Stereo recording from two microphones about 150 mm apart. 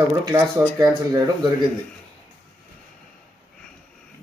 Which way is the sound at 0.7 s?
25° right (ahead or behind).